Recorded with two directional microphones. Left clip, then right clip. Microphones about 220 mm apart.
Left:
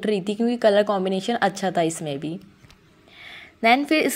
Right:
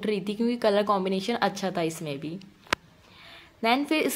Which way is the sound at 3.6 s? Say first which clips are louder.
Left 6 dB; 20° left (ahead or behind).